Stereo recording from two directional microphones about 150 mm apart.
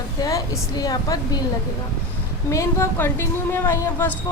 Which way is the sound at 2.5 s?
20° left (ahead or behind).